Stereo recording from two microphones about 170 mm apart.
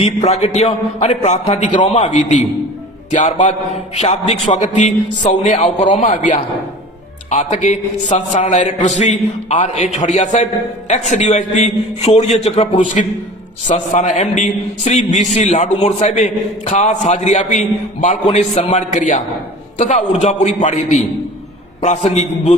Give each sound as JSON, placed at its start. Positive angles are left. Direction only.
{"t": 0.0, "sound": "a man's voice", "side_deg": 40}